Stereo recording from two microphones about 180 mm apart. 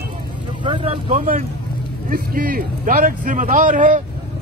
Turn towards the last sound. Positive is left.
turn(degrees=-45)  # may be behind; listen again after turning